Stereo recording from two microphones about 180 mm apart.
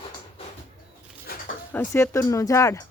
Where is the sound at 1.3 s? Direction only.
55° left (ahead or behind).